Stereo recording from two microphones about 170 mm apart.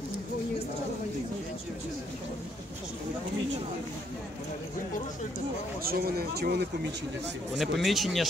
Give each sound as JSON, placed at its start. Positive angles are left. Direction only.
{"t": 5.9, "sound": "speech", "side_deg": -60}
{"t": 7.5, "sound": "speech", "side_deg": 0}